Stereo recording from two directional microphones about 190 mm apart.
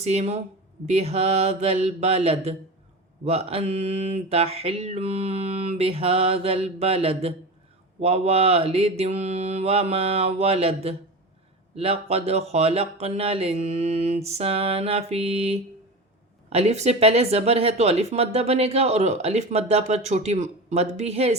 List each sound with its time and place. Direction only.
0.0 s speech: 35° right (ahead or behind)